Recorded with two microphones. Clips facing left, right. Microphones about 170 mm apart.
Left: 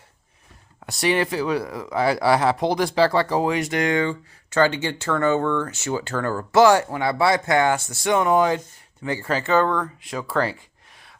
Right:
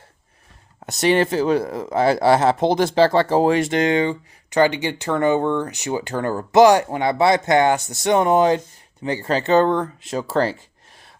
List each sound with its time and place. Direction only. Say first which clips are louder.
0.9 s speech: right 4 dB; 25° right (ahead or behind)